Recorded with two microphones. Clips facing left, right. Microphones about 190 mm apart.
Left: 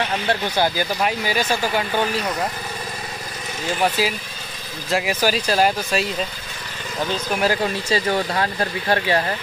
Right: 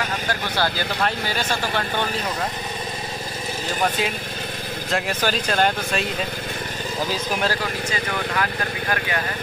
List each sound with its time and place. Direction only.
0.0 s speech: 25° left (ahead or behind)
0.7 s speech: 10° left (ahead or behind)
4.0 s speech: 5° left (ahead or behind)
7.6 s speech: 30° left (ahead or behind)